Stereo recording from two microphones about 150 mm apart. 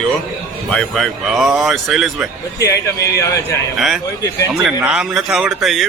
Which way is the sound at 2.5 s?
20° left (ahead or behind).